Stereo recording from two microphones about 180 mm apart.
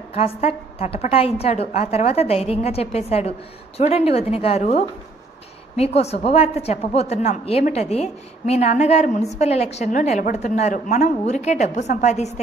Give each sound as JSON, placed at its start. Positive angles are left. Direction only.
{"t": 0.1, "sound": "a woman's voice", "side_deg": 35}